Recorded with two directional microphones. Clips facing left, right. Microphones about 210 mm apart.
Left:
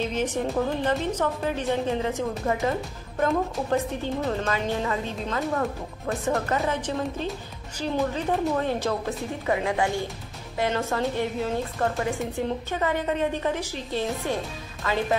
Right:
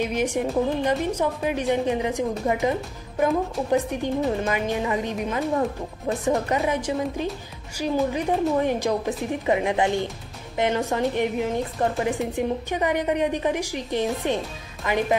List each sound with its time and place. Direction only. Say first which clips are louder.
0.0 s a woman's voice: right 2 dB; 10° right (ahead or behind)